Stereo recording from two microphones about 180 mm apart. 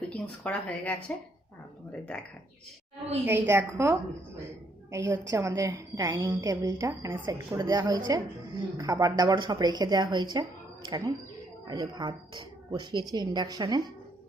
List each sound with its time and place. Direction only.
0.1 s speech: 5° left (ahead or behind)
3.2 s a woman's voice: 10° right (ahead or behind)